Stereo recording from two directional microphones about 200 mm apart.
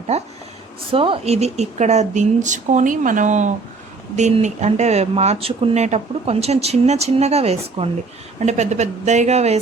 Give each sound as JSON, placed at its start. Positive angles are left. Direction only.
{"t": 0.1, "sound": "speech", "side_deg": -35}